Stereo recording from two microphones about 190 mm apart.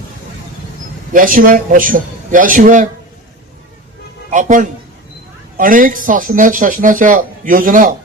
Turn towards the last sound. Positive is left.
turn(degrees=-45)  # may be behind; listen again after turning